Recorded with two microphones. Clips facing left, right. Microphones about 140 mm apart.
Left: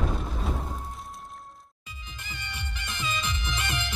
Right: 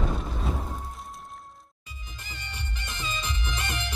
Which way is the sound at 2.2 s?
35° right (ahead or behind).